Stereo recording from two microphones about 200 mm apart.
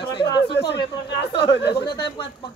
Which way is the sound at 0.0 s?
25° left (ahead or behind).